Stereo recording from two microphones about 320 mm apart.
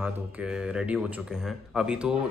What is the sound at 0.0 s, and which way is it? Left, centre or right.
Speech, centre.